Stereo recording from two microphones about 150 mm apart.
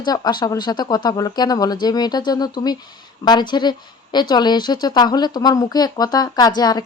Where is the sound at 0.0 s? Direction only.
30° left (ahead or behind).